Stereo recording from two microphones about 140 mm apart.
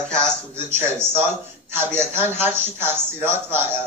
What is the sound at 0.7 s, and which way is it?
Speech, 15° right (ahead or behind).